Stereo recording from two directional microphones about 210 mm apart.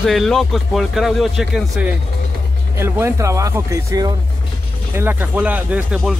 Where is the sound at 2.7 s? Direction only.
10° right (ahead or behind).